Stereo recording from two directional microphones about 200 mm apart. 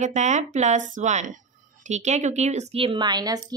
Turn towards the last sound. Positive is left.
turn(degrees=-20)  # may be behind; listen again after turning